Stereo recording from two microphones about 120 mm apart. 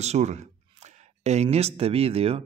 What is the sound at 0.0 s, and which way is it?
Speech, 65° right (ahead or behind).